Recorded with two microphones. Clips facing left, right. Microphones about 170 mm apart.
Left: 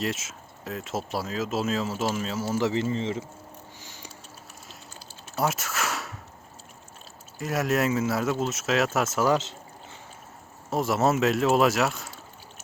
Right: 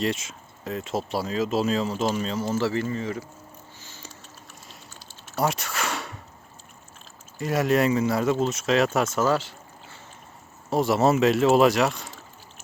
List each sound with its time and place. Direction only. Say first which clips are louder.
0.0 s speech: right 3 dB; centre (ahead or behind); by 3.2 s 25° left (ahead or behind)
3.8 s a sound: even; 15° left (ahead or behind)
5.4 s a sound: right 2 dB; centre (ahead or behind)
7.3 s speech: right 3 dB; centre (ahead or behind)
9.3 s speech: even; 20° left (ahead or behind)
10.7 s speech: right 3 dB; centre (ahead or behind)